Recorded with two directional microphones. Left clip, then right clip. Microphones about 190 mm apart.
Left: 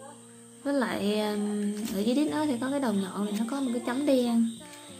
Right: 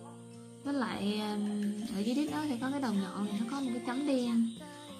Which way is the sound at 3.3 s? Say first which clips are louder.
Left 5 dB; centre (ahead or behind).